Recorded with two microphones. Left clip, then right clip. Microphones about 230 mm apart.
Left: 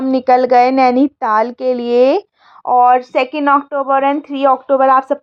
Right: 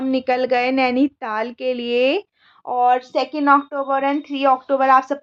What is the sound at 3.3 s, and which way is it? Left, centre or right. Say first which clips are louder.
A woman's voice: left 1 dB; left.